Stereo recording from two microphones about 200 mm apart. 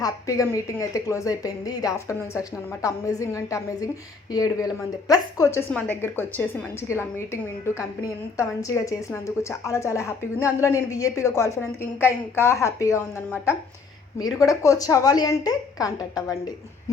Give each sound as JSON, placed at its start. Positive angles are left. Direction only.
{"t": 0.0, "sound": "a woman's voice", "side_deg": 15}